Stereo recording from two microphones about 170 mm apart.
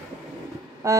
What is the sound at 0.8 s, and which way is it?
Speech, 20° right (ahead or behind).